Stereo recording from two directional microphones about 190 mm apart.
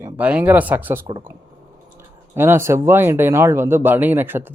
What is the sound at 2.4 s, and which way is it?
Speech, 15° right (ahead or behind).